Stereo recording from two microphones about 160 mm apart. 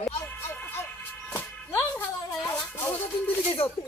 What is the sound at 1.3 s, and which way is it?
Music, 15° left (ahead or behind).